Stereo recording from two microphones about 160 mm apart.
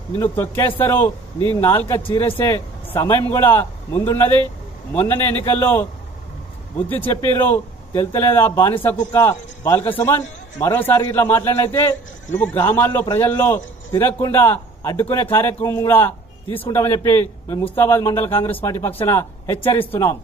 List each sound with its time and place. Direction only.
0.2 s a man's voice: 15° left (ahead or behind)
2.0 s speech: 35° left (ahead or behind)
2.3 s a man's voice: 15° left (ahead or behind)
6.9 s a man's voice: 15° left (ahead or behind)
19.6 s speech: 35° left (ahead or behind)
19.9 s a man's voice: 15° left (ahead or behind)